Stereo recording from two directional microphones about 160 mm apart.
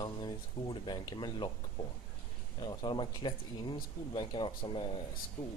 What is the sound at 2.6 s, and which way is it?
Speech, 30° left (ahead or behind).